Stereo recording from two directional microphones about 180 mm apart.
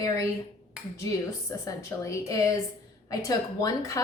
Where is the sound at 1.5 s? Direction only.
15° left (ahead or behind).